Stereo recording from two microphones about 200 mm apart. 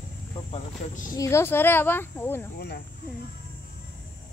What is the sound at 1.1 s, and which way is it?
Speech, 15° left (ahead or behind).